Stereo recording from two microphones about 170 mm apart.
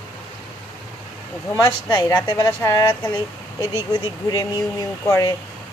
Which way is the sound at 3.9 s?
25° left (ahead or behind).